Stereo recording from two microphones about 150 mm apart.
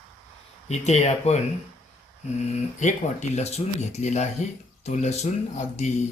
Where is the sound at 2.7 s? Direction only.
55° left (ahead or behind).